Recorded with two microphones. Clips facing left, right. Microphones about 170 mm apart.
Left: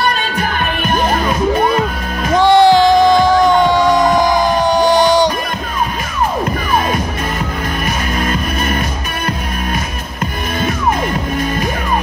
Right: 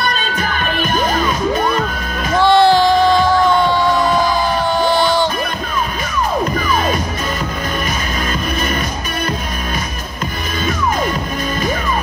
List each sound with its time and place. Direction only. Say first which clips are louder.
0.4 s music: left 1 dB; 50° left (ahead or behind)
2.3 s music: left 2 dB; 15° left (ahead or behind)